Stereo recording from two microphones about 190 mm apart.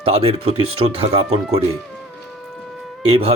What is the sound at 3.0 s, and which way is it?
Speech, 30° right (ahead or behind).